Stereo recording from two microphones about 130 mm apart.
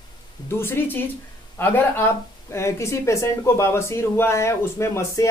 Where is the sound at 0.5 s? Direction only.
15° left (ahead or behind).